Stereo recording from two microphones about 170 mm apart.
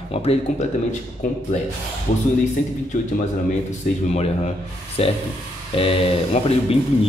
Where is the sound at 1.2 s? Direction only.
50° left (ahead or behind).